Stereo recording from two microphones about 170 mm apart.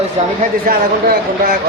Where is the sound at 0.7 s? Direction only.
60° right (ahead or behind).